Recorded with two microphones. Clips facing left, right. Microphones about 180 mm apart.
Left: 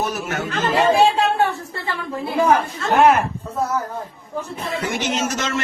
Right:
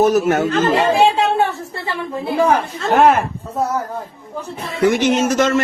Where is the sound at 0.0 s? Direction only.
45° right (ahead or behind).